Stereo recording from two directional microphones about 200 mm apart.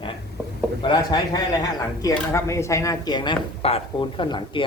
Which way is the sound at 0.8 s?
20° left (ahead or behind).